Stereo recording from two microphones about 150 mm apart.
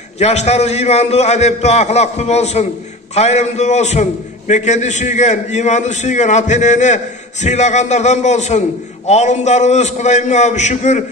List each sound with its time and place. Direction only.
0.2 s a man's voice: 45° left (ahead or behind)